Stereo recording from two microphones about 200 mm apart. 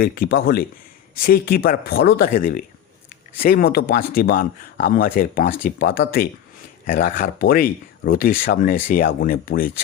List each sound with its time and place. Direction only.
0.0 s speech: 50° left (ahead or behind)